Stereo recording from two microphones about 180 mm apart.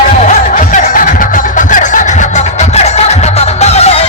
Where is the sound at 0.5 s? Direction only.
45° left (ahead or behind).